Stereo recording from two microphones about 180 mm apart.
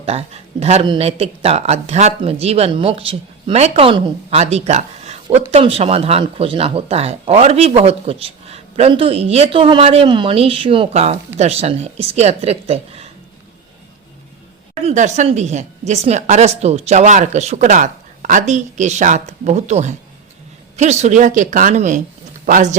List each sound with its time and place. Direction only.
0.0 s speech: 35° right (ahead or behind)
14.8 s a woman's voice: 40° right (ahead or behind)